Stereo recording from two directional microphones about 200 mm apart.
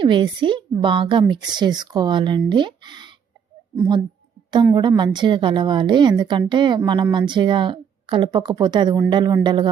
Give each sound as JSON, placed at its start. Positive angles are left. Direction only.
{"t": 0.0, "sound": "a woman's voice", "side_deg": -25}